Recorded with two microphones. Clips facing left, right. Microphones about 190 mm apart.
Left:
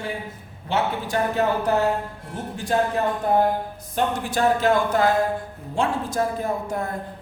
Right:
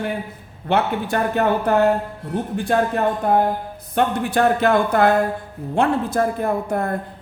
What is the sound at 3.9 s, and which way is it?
Speech, 60° right (ahead or behind).